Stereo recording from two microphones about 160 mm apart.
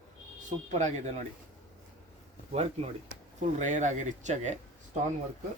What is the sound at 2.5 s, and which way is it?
Speech, 40° right (ahead or behind).